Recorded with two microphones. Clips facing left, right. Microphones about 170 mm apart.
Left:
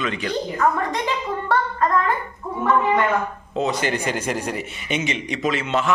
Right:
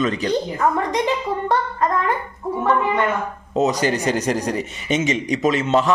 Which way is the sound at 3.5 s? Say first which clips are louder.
Right 4 dB; 40° right (ahead or behind).